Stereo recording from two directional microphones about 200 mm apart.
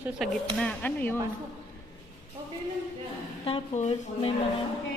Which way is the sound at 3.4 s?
30° left (ahead or behind).